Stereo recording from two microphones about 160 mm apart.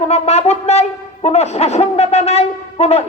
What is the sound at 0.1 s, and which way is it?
Wind instrument, 40° left (ahead or behind).